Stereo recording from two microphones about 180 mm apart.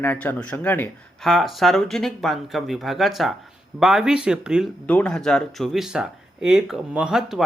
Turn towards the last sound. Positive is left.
turn(degrees=-5)  # may be behind; listen again after turning